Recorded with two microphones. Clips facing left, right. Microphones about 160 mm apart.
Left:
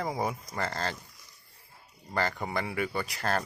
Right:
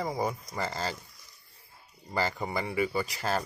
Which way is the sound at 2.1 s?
5° right (ahead or behind).